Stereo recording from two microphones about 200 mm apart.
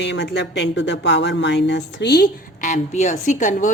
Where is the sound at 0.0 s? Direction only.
60° left (ahead or behind).